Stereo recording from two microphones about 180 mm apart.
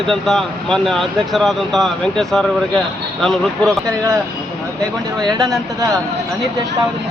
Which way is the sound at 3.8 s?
15° right (ahead or behind).